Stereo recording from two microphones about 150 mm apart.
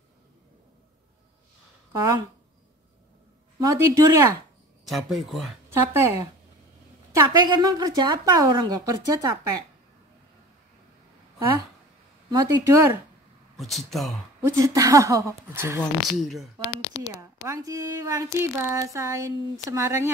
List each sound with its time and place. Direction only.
3.5 s speech: 25° right (ahead or behind)
4.8 s speech: centre (ahead or behind)
5.7 s speech: 15° right (ahead or behind)
12.3 s speech: 20° right (ahead or behind)
13.6 s speech: centre (ahead or behind)
14.5 s speech: 20° right (ahead or behind)
15.8 s speech: centre (ahead or behind)
17.2 s speech: 20° right (ahead or behind)